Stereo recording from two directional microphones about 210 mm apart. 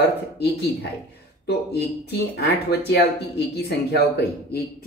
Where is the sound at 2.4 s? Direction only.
55° left (ahead or behind).